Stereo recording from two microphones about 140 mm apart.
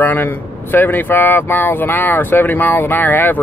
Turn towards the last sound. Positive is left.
turn(degrees=15)  # may be behind; listen again after turning